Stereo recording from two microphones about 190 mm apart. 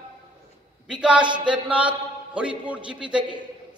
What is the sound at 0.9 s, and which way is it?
Speech, 5° right (ahead or behind).